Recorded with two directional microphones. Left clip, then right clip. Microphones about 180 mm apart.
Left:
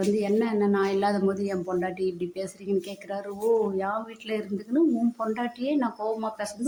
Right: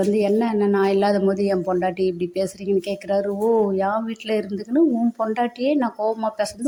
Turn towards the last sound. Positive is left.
turn(degrees=-25)  # may be behind; listen again after turning